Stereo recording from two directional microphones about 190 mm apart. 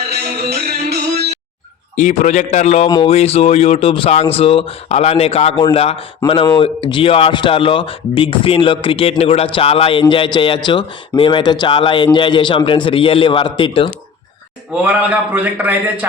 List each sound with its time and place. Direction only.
0.1 s music: 55° right (ahead or behind)
2.0 s speech: 40° left (ahead or behind)
2.8 s a man's voice: 25° left (ahead or behind)
14.8 s a man's voice: 5° right (ahead or behind)